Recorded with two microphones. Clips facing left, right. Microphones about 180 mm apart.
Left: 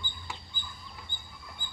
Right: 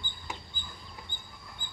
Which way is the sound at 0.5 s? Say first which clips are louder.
Left 1 dB; 45° left (ahead or behind).